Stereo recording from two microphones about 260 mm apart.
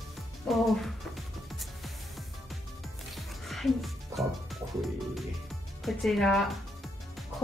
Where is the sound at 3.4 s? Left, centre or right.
Centre.